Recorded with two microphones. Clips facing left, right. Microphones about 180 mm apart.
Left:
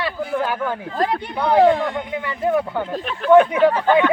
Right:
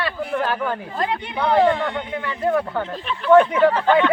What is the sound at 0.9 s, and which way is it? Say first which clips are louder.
Speech: left 3 dB; 40° left (ahead or behind).